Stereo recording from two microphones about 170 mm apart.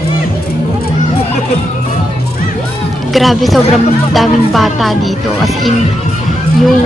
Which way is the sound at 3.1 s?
Centre (ahead or behind).